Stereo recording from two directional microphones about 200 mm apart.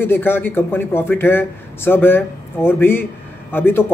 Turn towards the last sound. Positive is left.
turn(degrees=10)  # may be behind; listen again after turning